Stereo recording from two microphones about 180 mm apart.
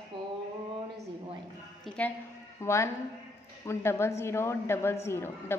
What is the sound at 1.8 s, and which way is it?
A woman's voice, 5° left (ahead or behind).